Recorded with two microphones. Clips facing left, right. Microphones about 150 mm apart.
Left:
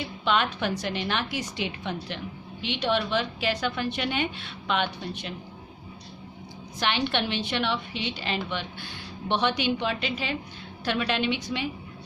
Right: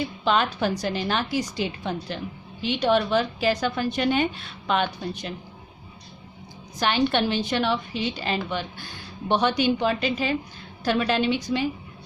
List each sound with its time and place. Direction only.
0.3 s a woman's voice: 35° right (ahead or behind)
6.7 s a woman's voice: 40° right (ahead or behind)